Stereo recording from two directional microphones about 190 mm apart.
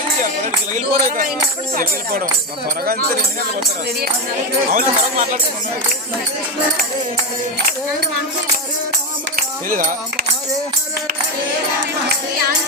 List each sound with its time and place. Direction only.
0.7 s speech: 45° right (ahead or behind)
4.7 s speech: 45° right (ahead or behind)
9.3 s music: 45° right (ahead or behind)